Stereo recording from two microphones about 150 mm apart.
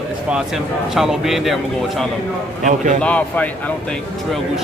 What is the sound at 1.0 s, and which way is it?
Speech, 5° right (ahead or behind).